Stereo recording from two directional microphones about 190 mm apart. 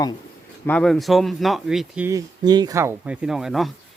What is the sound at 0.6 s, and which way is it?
Speech, 5° left (ahead or behind).